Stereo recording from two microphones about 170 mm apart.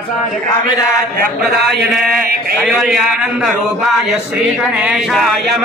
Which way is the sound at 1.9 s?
Centre (ahead or behind).